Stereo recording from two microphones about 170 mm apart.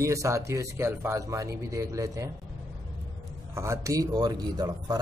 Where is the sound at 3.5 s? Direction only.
15° right (ahead or behind).